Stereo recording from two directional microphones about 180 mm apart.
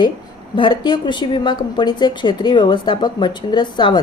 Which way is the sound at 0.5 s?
25° left (ahead or behind).